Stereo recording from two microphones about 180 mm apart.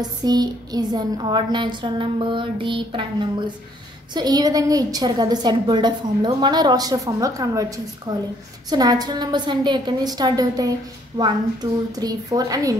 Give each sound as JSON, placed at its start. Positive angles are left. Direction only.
{"t": 0.0, "sound": "a woman's voice", "side_deg": -20}